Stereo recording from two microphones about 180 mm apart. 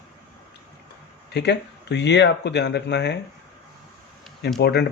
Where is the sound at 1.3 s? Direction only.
70° left (ahead or behind).